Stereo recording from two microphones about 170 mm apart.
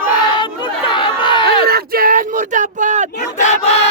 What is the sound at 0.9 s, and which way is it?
Chatter, 30° left (ahead or behind).